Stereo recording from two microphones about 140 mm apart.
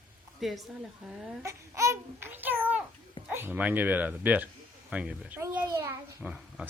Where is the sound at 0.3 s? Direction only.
Centre (ahead or behind).